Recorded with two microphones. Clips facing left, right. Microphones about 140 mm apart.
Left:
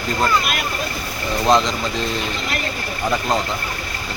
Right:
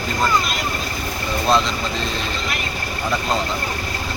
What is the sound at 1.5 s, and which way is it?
Speech, 20° left (ahead or behind).